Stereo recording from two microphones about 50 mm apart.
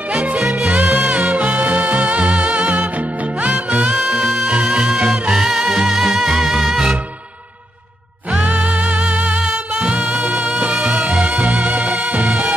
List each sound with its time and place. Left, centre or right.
0.1 s music: right
3.9 s music: centre
8.3 s music: right
9.4 s music: centre